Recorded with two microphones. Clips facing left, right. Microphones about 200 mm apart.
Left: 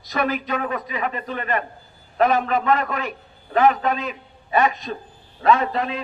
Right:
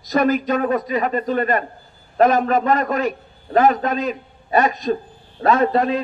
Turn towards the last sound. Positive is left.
turn(degrees=-40)  # may be behind; listen again after turning